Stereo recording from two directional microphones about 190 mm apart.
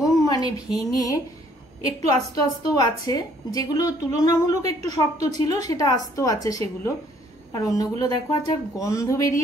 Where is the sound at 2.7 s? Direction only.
20° left (ahead or behind).